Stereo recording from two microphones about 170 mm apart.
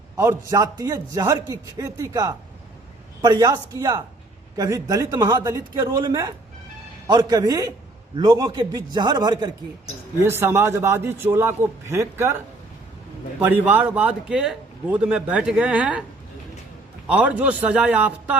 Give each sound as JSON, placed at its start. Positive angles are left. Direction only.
{"t": 0.2, "sound": "a man's voice", "side_deg": -20}
{"t": 13.4, "sound": "a man's voice", "side_deg": -10}
{"t": 17.1, "sound": "a man's voice", "side_deg": -10}